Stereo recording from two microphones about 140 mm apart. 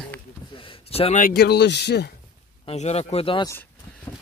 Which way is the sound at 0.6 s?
40° left (ahead or behind).